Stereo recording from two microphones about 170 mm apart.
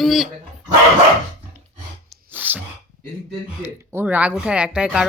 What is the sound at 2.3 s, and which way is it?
Whispering, 10° right (ahead or behind).